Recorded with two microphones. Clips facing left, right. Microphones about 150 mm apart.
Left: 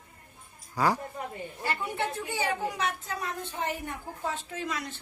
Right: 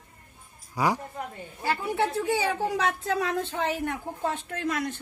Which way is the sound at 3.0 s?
90° right.